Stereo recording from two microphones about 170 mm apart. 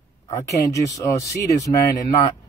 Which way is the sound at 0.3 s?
20° left (ahead or behind).